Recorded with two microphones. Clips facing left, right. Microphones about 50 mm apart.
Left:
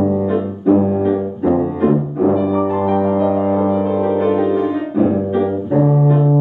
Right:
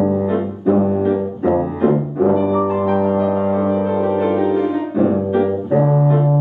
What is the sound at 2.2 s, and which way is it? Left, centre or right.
Music, centre.